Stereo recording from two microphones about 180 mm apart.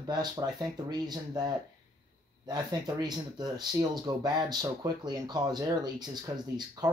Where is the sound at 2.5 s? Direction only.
20° right (ahead or behind).